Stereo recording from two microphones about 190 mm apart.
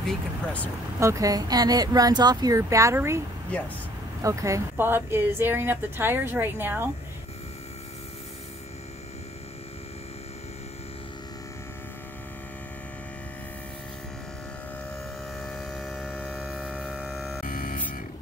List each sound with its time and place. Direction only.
0.0 s speech: 5° left (ahead or behind)
0.9 s speech: 15° right (ahead or behind)
4.2 s a woman's voice: 15° right (ahead or behind)
15.4 s a sound: centre (ahead or behind)
17.5 s music: 45° left (ahead or behind)